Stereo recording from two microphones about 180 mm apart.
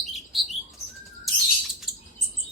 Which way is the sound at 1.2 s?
Centre (ahead or behind).